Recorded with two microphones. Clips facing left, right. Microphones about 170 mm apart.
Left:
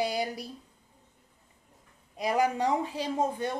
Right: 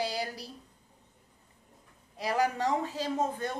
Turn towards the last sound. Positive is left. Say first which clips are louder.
# left 2 dB
turn(degrees=15)  # may be behind; listen again after turning